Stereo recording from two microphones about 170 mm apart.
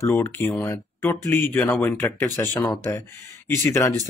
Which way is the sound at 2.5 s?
25° left (ahead or behind).